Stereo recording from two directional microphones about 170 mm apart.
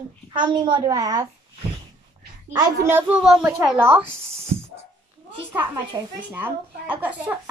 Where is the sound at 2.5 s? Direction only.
15° right (ahead or behind).